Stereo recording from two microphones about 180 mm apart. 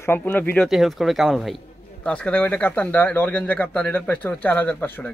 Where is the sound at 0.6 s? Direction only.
Centre (ahead or behind).